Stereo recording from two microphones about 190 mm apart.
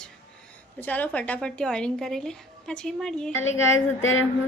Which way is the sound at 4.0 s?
90° left.